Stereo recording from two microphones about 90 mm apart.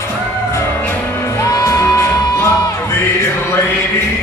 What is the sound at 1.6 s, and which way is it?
Music, 35° left (ahead or behind).